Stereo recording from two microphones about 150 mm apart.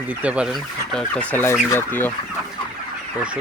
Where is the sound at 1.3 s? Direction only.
15° left (ahead or behind).